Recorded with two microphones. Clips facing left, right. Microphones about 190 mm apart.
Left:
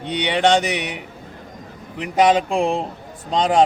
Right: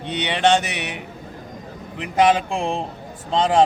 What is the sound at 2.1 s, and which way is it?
Speech, 15° left (ahead or behind).